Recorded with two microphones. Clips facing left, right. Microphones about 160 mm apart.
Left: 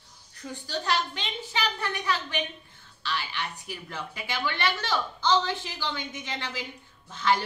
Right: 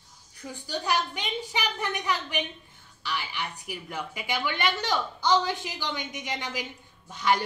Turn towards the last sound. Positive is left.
turn(degrees=-15)  # may be behind; listen again after turning